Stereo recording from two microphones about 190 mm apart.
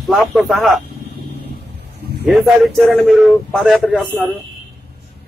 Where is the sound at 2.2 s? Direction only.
Centre (ahead or behind).